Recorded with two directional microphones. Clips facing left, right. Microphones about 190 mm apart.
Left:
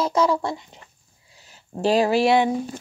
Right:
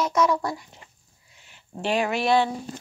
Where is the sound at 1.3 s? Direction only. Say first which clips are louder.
Left 5 dB; 35° left (ahead or behind).